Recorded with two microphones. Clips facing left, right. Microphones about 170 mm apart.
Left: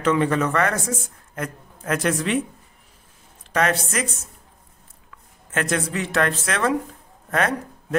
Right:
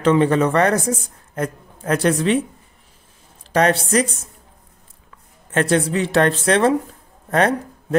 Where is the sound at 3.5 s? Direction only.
35° right (ahead or behind).